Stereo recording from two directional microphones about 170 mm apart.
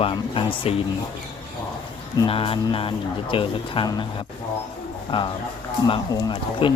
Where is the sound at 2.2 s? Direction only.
30° left (ahead or behind).